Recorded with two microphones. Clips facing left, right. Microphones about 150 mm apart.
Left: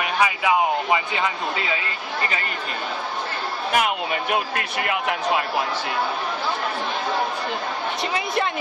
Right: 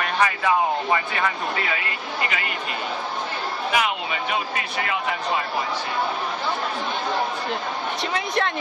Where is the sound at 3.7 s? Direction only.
50° left (ahead or behind).